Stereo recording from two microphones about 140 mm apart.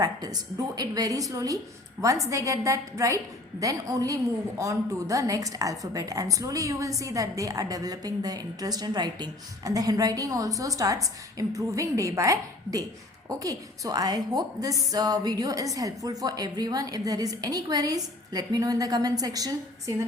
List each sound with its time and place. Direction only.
0.0 s a woman's voice: 25° right (ahead or behind)